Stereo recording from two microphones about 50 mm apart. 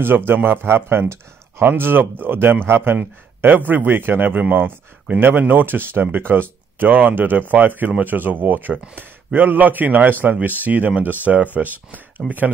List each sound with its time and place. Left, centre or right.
0.3 s speech: right
1.7 s speech: right